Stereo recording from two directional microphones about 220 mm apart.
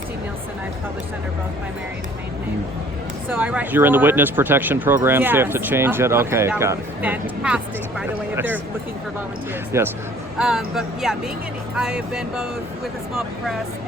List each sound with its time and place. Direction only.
3.2 s speech: 10° right (ahead or behind)
9.7 s speech: 10° right (ahead or behind)